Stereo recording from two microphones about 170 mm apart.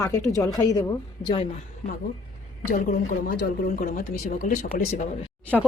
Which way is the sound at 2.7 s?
55° left (ahead or behind).